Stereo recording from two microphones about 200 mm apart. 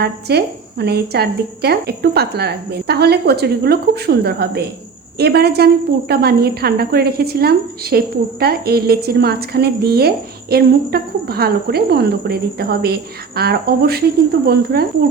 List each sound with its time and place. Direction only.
0.0 s a woman's voice: 55° right (ahead or behind)